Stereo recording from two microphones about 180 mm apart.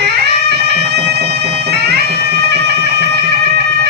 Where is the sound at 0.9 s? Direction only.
70° right (ahead or behind).